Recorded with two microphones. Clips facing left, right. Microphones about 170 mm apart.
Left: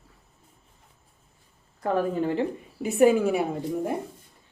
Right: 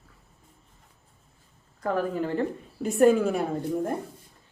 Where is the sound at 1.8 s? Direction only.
20° left (ahead or behind).